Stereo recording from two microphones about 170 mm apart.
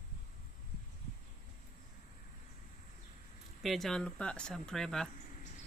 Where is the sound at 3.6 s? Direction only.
Centre (ahead or behind).